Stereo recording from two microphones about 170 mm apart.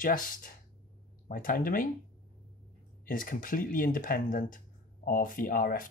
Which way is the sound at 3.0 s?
55° left (ahead or behind).